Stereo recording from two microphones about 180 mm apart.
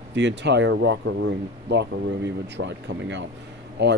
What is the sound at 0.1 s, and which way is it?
Speech, 75° right (ahead or behind).